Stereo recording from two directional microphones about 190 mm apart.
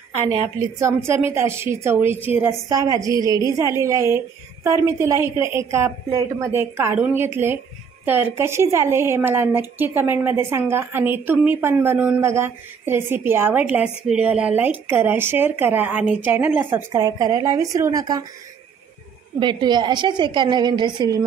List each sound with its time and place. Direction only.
0.7 s a woman's voice: 15° right (ahead or behind)
19.4 s a woman's voice: 25° right (ahead or behind)